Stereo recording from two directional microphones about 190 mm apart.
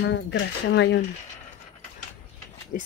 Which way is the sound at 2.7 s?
45° left (ahead or behind).